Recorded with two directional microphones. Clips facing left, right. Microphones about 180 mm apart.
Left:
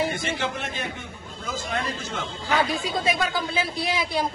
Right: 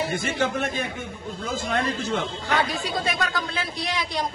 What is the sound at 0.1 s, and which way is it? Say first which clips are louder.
Speech: right 3 dB; 50° right (ahead or behind).